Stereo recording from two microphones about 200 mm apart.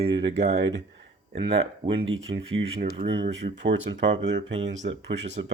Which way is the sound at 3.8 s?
65° right (ahead or behind).